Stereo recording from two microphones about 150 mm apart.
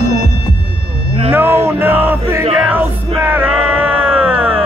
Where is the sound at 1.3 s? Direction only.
15° right (ahead or behind).